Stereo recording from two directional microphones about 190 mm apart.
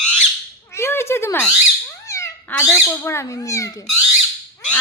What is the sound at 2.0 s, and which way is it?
Speech, 15° left (ahead or behind).